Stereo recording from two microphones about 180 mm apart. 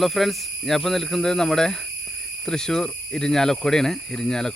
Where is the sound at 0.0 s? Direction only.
Centre (ahead or behind).